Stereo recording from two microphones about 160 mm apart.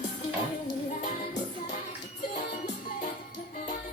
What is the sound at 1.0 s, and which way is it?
Music, 50° left (ahead or behind).